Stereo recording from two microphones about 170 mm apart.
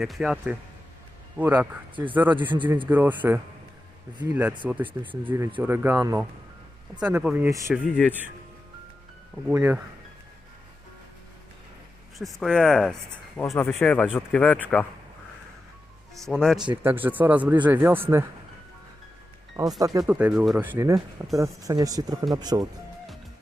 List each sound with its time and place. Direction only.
0.0 s speech: centre (ahead or behind)
7.0 s speech: 5° right (ahead or behind)
7.7 s speech: centre (ahead or behind)
9.5 s speech: 15° right (ahead or behind)
12.2 s speech: centre (ahead or behind)
16.3 s speech: centre (ahead or behind)
16.8 s speech: 10° right (ahead or behind)
19.8 s speech: 20° right (ahead or behind)
20.1 s speech: 5° right (ahead or behind)
20.6 s speech: 15° right (ahead or behind)